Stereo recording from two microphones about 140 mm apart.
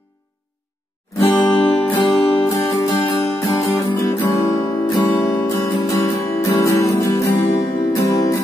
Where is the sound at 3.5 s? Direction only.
25° left (ahead or behind).